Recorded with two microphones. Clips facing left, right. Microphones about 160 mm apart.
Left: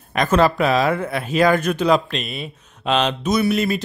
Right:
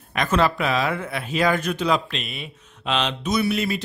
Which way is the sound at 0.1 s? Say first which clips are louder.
Left 4 dB; 40° left (ahead or behind).